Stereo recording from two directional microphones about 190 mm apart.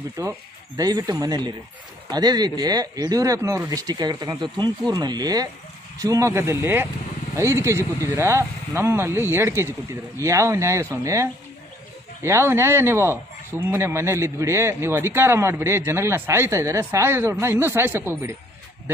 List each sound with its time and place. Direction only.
0.2 s a man's voice: 20° right (ahead or behind)